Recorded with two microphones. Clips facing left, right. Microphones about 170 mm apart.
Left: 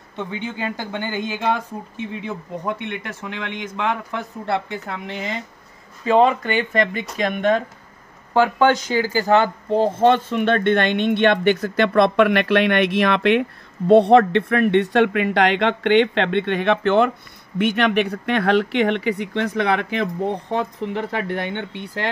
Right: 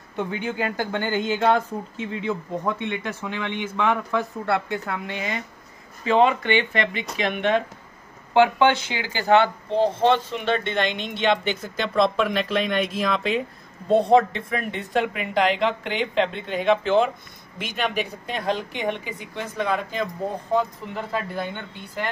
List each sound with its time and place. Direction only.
0.3 s speech: 20° left (ahead or behind)
2.6 s speech: 15° left (ahead or behind)
6.0 s speech: 35° left (ahead or behind); by 22.1 s 75° left (ahead or behind)